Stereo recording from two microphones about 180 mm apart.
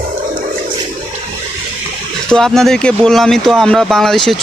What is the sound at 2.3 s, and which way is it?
A man's voice, centre (ahead or behind).